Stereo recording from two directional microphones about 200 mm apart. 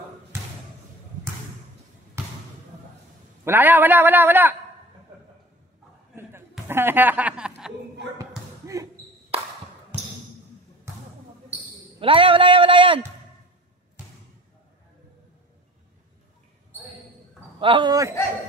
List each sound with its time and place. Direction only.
2.2 s basketball bounce: 10° right (ahead or behind)
3.4 s a man's voice: 10° right (ahead or behind)
6.7 s speech: 10° right (ahead or behind)
8.7 s basketball bounce: 15° right (ahead or behind)
12.0 s speech: 25° right (ahead or behind)
17.6 s speech: 25° right (ahead or behind)